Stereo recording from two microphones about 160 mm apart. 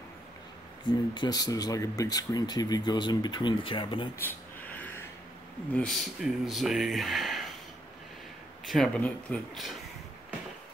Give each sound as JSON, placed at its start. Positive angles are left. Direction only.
{"t": 1.1, "sound": "speech", "side_deg": 25}
{"t": 4.2, "sound": "a sound", "side_deg": 10}
{"t": 5.7, "sound": "speech", "side_deg": 5}
{"t": 8.6, "sound": "speech", "side_deg": 5}